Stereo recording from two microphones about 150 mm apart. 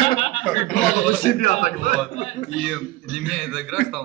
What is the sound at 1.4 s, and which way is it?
Speech, 55° left (ahead or behind).